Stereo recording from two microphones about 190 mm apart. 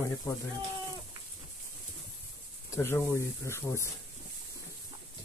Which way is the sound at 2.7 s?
15° left (ahead or behind).